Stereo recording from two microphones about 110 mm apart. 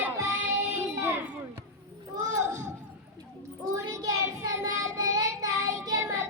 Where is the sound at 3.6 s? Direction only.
30° right (ahead or behind).